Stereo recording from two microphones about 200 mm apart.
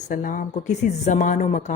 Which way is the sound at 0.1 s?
40° left (ahead or behind).